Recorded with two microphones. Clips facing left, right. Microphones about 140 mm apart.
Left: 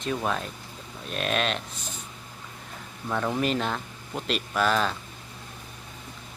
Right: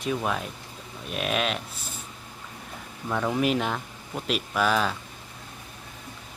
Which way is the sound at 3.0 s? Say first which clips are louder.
Right 1 dB; 5° right (ahead or behind).